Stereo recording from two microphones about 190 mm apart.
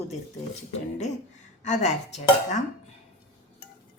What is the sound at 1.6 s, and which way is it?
A woman's voice, 40° left (ahead or behind).